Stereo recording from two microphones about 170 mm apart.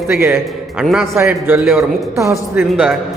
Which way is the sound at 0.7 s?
Centre (ahead or behind).